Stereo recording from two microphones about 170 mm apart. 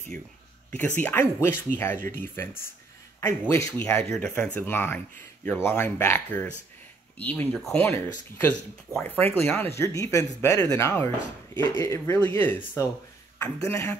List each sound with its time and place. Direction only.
0.7 s speech: 10° left (ahead or behind)